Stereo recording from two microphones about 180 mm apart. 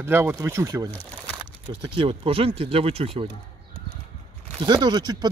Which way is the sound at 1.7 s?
30° right (ahead or behind).